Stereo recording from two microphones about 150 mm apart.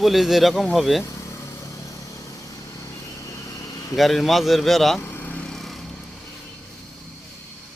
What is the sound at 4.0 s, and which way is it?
Speech, centre (ahead or behind).